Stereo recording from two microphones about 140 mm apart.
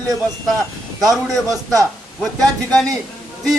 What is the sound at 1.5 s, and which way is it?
Speech, 25° right (ahead or behind).